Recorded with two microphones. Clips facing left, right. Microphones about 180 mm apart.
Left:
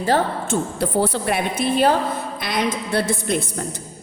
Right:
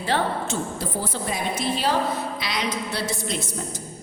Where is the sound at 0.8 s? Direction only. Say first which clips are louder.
Left 8 dB; 65° left (ahead or behind).